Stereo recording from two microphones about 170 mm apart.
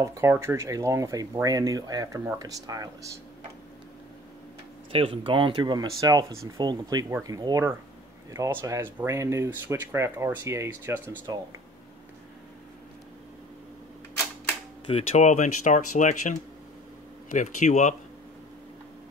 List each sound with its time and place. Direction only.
0.0 s speech: 15° right (ahead or behind)
4.9 s speech: 30° right (ahead or behind); by 11.3 s 15° right (ahead or behind)
14.9 s speech: 40° left (ahead or behind)